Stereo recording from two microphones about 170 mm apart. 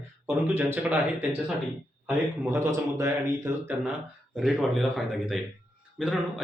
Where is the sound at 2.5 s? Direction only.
15° right (ahead or behind).